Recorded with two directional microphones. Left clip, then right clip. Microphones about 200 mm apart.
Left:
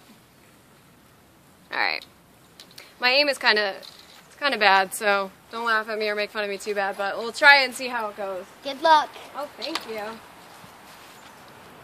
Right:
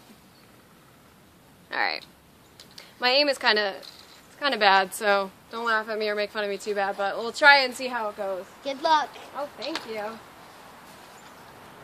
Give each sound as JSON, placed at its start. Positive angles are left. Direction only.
{"t": 1.7, "sound": "a sound", "side_deg": -5}
{"t": 2.7, "sound": "a woman's voice", "side_deg": -5}
{"t": 8.6, "sound": "speech", "side_deg": 35}